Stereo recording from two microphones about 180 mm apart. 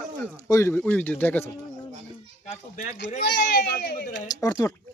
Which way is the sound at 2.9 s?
70° left (ahead or behind).